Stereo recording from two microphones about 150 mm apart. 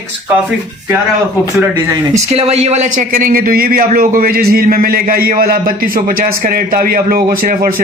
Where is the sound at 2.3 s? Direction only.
45° right (ahead or behind).